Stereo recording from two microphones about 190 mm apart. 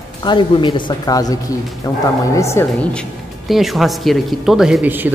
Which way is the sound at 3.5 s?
Centre (ahead or behind).